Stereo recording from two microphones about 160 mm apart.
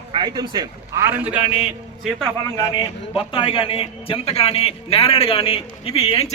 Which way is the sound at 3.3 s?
30° left (ahead or behind).